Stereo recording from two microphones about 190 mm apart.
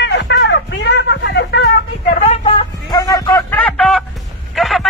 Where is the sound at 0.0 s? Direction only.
65° left (ahead or behind).